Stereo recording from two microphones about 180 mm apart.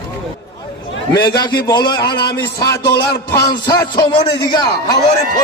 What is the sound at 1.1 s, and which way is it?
Speech, 60° left (ahead or behind).